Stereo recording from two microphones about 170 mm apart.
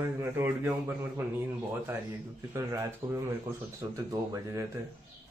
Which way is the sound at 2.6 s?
20° right (ahead or behind).